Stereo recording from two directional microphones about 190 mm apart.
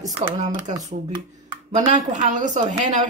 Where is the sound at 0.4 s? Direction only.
35° right (ahead or behind).